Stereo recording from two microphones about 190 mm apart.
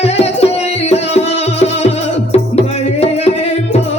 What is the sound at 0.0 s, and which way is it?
Music, 35° left (ahead or behind).